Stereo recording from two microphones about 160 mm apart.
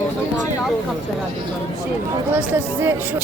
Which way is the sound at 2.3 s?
10° right (ahead or behind).